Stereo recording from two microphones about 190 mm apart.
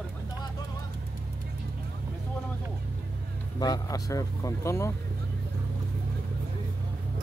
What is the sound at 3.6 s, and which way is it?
Speech, 20° left (ahead or behind).